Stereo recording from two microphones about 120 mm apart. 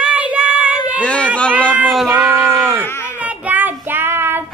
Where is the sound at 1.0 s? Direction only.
10° left (ahead or behind).